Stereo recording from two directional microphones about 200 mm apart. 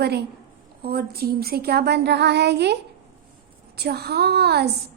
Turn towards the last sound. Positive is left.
turn(degrees=-55)  # may be behind; listen again after turning